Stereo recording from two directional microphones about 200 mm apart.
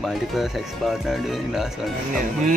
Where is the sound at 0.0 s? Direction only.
Centre (ahead or behind).